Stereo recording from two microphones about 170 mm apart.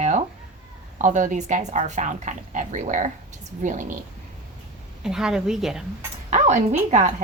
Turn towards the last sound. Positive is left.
turn(degrees=-45)  # may be behind; listen again after turning